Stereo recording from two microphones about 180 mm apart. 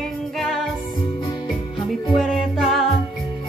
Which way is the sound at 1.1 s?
25° left (ahead or behind).